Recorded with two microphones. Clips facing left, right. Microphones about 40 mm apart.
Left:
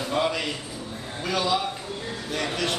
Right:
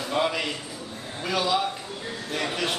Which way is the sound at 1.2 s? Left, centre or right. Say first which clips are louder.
Even; centre.